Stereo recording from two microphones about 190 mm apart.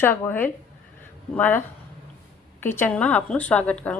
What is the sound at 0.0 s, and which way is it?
A woman's voice, 10° left (ahead or behind).